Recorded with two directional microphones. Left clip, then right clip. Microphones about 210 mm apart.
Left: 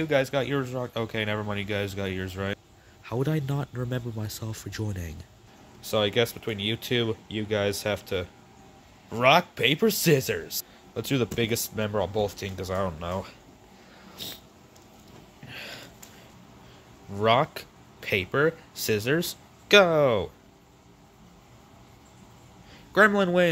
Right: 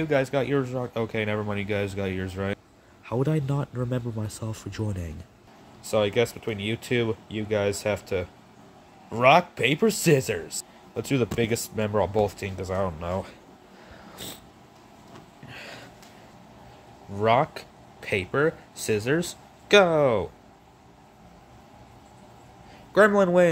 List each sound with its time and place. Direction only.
0.0 s speech: centre (ahead or behind)
12.4 s speech: centre (ahead or behind)
14.1 s a sound: 20° right (ahead or behind)
15.4 s a sound: 5° left (ahead or behind)
17.1 s speech: centre (ahead or behind)
22.9 s speech: 5° left (ahead or behind)